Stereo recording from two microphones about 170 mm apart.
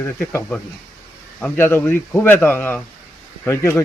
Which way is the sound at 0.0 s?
15° left (ahead or behind).